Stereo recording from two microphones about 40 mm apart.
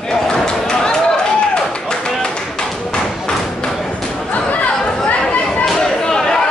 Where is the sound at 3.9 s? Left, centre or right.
Centre.